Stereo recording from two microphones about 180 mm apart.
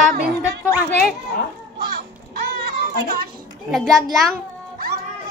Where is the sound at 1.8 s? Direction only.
60° right (ahead or behind).